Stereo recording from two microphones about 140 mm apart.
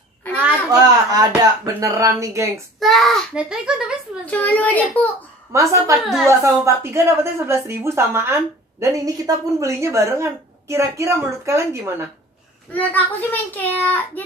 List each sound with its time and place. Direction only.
0.7 s a woman's voice: 25° right (ahead or behind)
2.8 s a child's voice: centre (ahead or behind)
4.3 s a child's voice: 10° left (ahead or behind)
5.5 s a woman's voice: 20° right (ahead or behind)
5.9 s a child's voice: centre (ahead or behind)
6.2 s a woman's voice: 20° right (ahead or behind)
12.7 s a child's voice: 10° left (ahead or behind)